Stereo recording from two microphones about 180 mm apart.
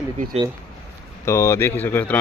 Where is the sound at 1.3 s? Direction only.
15° left (ahead or behind).